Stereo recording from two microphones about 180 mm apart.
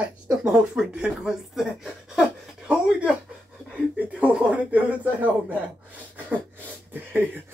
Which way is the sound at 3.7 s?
5° right (ahead or behind).